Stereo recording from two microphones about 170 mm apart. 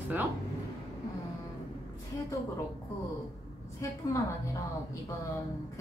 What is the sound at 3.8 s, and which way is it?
Speech, 20° left (ahead or behind).